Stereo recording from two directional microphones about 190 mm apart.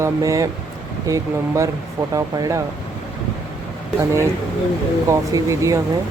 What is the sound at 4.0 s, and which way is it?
Speech, 15° right (ahead or behind).